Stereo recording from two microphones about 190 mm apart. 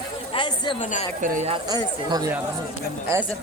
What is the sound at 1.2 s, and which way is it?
Speech, 40° right (ahead or behind).